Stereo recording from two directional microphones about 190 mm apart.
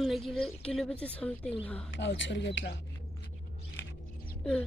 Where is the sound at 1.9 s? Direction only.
75° left (ahead or behind).